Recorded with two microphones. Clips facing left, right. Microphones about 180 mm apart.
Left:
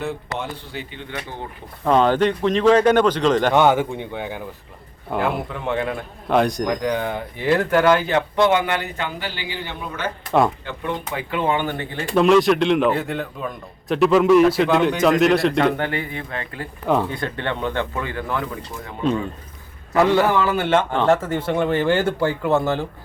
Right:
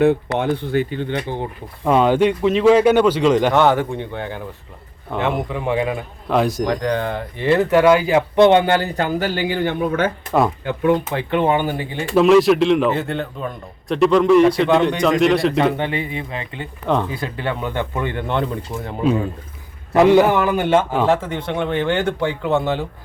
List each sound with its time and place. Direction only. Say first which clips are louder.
0.0 s speech: right 11 dB; 60° right (ahead or behind)
1.8 s speech: right 2 dB; 10° right (ahead or behind)
3.5 s a man's voice: right 1 dB; 10° left (ahead or behind); by 8.2 s 10° right (ahead or behind)
8.4 s a man's voice: right 7 dB; 30° right (ahead or behind); by 10.1 s 50° right (ahead or behind)
11.2 s a man's voice: right 4 dB; 20° right (ahead or behind); by 17.1 s 5° left (ahead or behind)
17.1 s speech: right 1 dB; 5° right (ahead or behind); by 18.4 s 25° right (ahead or behind)
19.9 s a man's voice: right 4 dB; 20° right (ahead or behind); by 22.9 s centre (ahead or behind)